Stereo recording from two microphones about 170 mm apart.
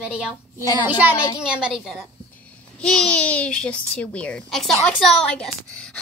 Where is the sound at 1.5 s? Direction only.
5° right (ahead or behind).